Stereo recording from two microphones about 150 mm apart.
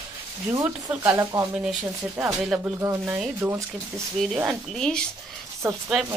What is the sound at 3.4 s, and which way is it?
Speech, 20° right (ahead or behind).